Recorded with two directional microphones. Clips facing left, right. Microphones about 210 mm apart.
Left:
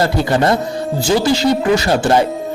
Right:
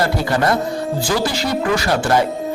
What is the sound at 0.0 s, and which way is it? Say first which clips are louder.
A man's voice: left 3 dB; 25° left (ahead or behind).